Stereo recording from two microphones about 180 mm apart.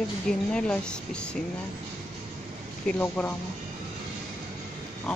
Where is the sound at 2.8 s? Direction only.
10° left (ahead or behind).